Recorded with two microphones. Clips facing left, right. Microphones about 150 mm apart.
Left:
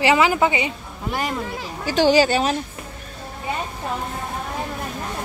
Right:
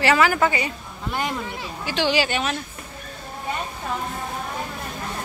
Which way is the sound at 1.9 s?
40° left (ahead or behind).